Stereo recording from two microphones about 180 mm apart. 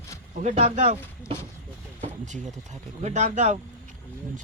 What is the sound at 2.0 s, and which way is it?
Speech, 40° right (ahead or behind).